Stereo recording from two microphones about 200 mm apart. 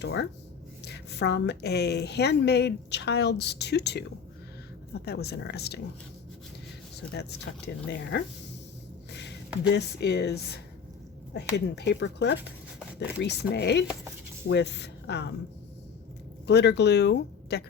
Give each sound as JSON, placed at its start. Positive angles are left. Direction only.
{"t": 0.0, "sound": "a woman's voice", "side_deg": 60}
{"t": 5.0, "sound": "speech", "side_deg": 55}
{"t": 7.1, "sound": "a woman's voice", "side_deg": 55}
{"t": 9.6, "sound": "a woman's voice", "side_deg": 60}
{"t": 16.5, "sound": "a woman's voice", "side_deg": 55}